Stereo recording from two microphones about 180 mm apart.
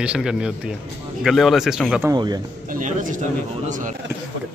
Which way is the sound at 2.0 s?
20° right (ahead or behind).